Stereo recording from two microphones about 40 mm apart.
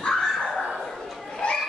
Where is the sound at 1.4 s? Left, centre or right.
Left.